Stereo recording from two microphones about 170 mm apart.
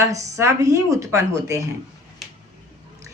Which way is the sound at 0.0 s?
20° right (ahead or behind).